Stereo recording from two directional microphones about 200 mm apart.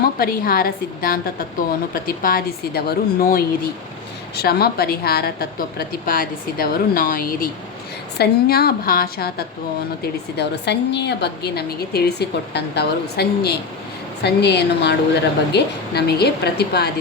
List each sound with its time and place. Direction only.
0.0 s a woman's voice: 50° left (ahead or behind)